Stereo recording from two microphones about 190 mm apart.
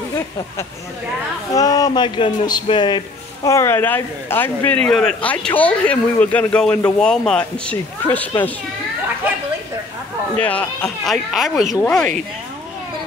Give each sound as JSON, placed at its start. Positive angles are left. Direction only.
{"t": 1.5, "sound": "speech", "side_deg": 20}
{"t": 10.4, "sound": "speech", "side_deg": 5}